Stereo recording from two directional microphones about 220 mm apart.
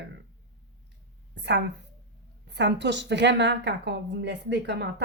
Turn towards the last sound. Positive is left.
turn(degrees=-50)  # may be behind; listen again after turning